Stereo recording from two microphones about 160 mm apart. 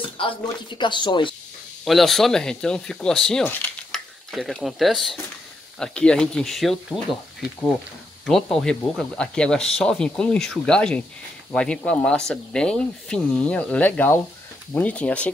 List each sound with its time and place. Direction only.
0.0 s speech: 30° left (ahead or behind)
1.9 s speech: centre (ahead or behind)